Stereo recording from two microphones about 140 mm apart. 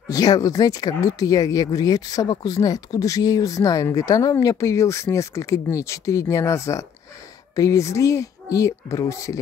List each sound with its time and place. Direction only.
0.1 s speech: 25° left (ahead or behind)